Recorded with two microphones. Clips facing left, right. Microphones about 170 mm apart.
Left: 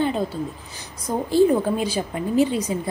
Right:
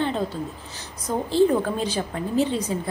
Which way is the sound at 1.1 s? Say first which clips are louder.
Left 2 dB; 10° left (ahead or behind).